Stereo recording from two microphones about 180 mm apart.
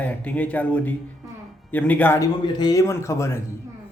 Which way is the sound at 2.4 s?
20° left (ahead or behind).